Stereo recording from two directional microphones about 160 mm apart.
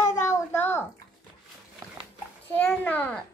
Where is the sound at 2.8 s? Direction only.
10° left (ahead or behind).